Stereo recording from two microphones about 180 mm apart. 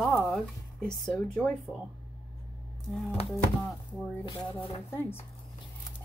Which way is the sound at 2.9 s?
Centre (ahead or behind).